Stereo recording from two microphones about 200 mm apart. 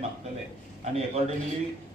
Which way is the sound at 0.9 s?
30° right (ahead or behind).